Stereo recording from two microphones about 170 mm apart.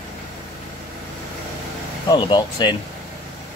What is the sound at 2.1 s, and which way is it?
Speech, 25° left (ahead or behind).